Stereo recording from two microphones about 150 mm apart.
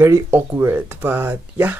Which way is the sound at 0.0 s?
15° right (ahead or behind).